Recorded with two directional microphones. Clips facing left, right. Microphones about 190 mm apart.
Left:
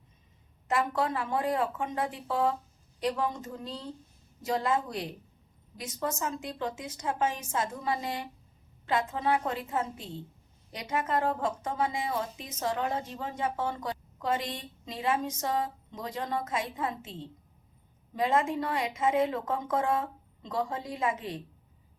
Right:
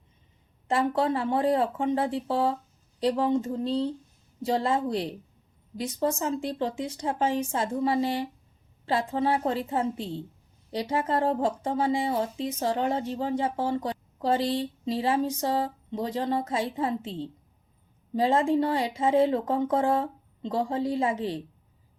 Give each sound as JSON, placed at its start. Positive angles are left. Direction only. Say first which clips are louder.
{"t": 0.7, "sound": "speech", "louder": "right 4 dB", "side_deg": -30}